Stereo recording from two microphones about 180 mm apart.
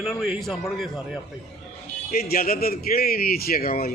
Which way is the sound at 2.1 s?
55° left (ahead or behind).